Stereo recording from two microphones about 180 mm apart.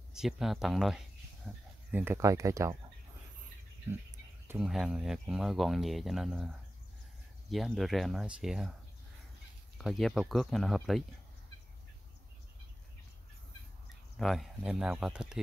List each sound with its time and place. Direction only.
0.1 s speech: centre (ahead or behind)
3.9 s speech: 10° right (ahead or behind)
9.8 s speech: centre (ahead or behind)
14.1 s speech: centre (ahead or behind)